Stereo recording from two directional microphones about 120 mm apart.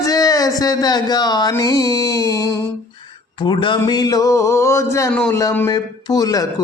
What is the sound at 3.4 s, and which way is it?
Mantra, 45° left (ahead or behind).